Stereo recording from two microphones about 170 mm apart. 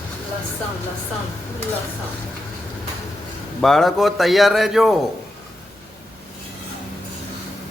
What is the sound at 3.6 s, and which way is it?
A man's voice, centre (ahead or behind).